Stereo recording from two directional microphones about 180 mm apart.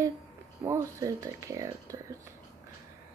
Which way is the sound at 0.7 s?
15° right (ahead or behind).